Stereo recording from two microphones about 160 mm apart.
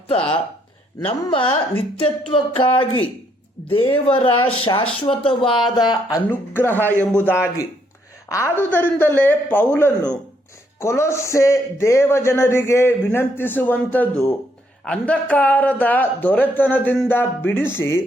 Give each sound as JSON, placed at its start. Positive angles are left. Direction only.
{"t": 0.1, "sound": "speech", "side_deg": 35}
{"t": 3.7, "sound": "speech", "side_deg": 35}
{"t": 6.7, "sound": "a man's voice", "side_deg": -15}
{"t": 7.2, "sound": "speech", "side_deg": 10}